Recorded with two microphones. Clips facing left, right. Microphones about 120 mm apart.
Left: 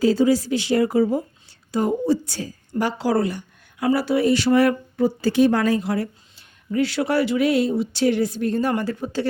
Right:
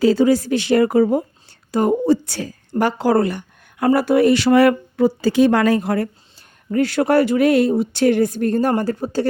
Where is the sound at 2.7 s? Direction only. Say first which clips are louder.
Right 5 dB; 50° right (ahead or behind); by 5.8 s 80° right.